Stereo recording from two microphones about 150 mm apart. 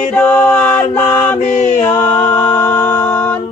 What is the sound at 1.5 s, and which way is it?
Mantra, 55° left (ahead or behind).